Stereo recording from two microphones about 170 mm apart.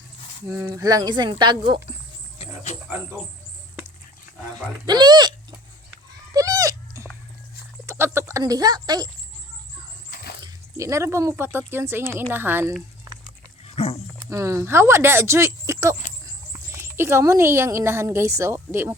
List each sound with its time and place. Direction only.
0.5 s speech: 20° right (ahead or behind)
4.9 s speech: 25° right (ahead or behind)
6.3 s goat: 20° right (ahead or behind)
7.9 s speech: 15° right (ahead or behind)
10.1 s a sound: 65° left (ahead or behind)
10.4 s speech: 20° right (ahead or behind)
13.7 s dog: 40° left (ahead or behind)
14.2 s speech: 20° right (ahead or behind)